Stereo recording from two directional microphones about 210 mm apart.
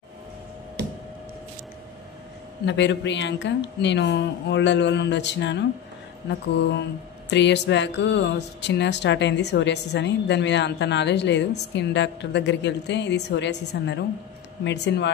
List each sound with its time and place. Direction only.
2.6 s speech: 55° left (ahead or behind)
7.2 s speech: 55° left (ahead or behind)